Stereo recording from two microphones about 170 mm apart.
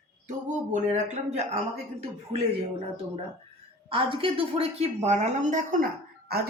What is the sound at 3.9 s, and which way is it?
A woman's voice, 30° right (ahead or behind).